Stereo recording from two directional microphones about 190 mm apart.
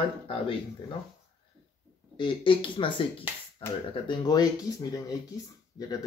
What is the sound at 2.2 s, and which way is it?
Speech, 25° left (ahead or behind).